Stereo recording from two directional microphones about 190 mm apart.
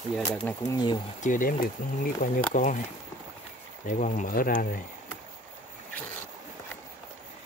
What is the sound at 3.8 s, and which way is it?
Speech, 40° left (ahead or behind).